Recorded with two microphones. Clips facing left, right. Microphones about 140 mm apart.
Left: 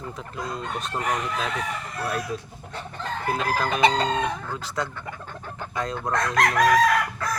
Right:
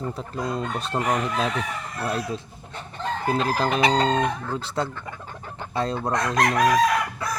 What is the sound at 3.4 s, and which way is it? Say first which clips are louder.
Speech: left 1 dB; 30° right (ahead or behind).